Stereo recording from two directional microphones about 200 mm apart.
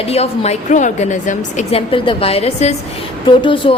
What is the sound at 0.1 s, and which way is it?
A woman's voice, 30° left (ahead or behind).